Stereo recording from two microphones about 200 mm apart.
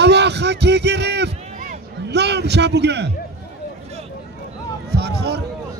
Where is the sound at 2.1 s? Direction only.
55° right (ahead or behind).